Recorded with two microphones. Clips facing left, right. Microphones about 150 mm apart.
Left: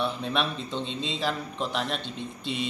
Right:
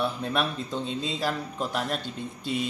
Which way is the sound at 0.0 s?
5° right (ahead or behind).